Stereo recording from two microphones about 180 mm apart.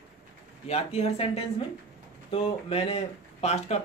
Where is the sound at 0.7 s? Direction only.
35° left (ahead or behind).